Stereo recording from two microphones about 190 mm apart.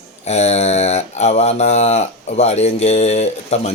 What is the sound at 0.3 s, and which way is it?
Mantra, 35° left (ahead or behind).